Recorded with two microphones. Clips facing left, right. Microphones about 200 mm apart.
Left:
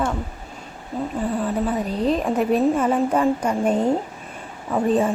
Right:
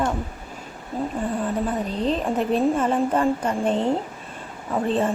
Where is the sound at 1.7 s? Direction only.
10° left (ahead or behind).